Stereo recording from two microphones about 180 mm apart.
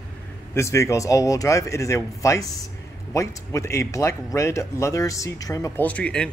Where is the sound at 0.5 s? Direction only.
15° left (ahead or behind).